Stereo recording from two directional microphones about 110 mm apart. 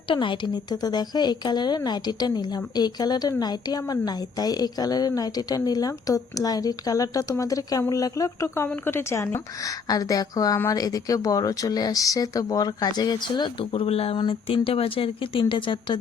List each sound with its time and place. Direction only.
0.1 s a woman's voice: 50° left (ahead or behind)